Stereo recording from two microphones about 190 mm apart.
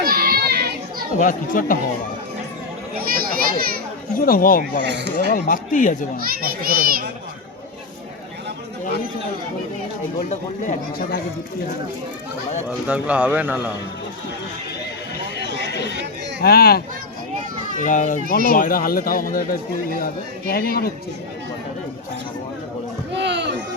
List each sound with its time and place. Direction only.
0.0 s children playing: 50° right (ahead or behind)
1.1 s speech: 45° left (ahead or behind)
2.9 s children playing: 50° right (ahead or behind)
4.2 s speech: 50° left (ahead or behind)
4.8 s speech: 65° right (ahead or behind)
5.1 s speech: 45° left (ahead or behind)
6.1 s a child's voice: 50° right (ahead or behind)
10.2 s speech: 45° left (ahead or behind)
12.9 s speech: 10° right (ahead or behind)
15.7 s speech: 65° left (ahead or behind)
17.7 s speech: 40° left (ahead or behind)
20.5 s speech: 55° left (ahead or behind)
23.1 s a sound: 65° right (ahead or behind)